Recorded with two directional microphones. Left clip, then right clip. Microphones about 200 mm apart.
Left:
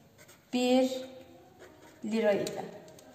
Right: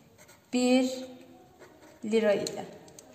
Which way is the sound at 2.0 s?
40° right (ahead or behind).